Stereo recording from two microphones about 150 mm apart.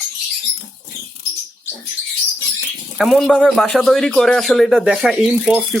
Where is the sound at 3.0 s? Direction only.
Centre (ahead or behind).